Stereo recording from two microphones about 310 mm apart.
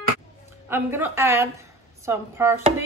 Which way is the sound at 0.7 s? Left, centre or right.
Centre.